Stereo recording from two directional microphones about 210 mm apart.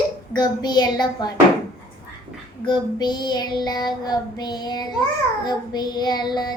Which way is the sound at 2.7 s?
20° left (ahead or behind).